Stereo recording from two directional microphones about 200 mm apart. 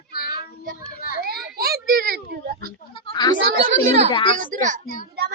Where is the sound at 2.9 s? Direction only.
25° left (ahead or behind).